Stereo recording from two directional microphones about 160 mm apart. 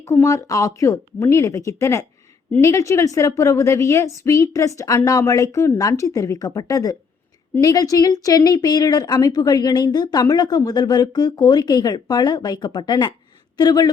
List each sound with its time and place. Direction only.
0.0 s speech: 20° left (ahead or behind)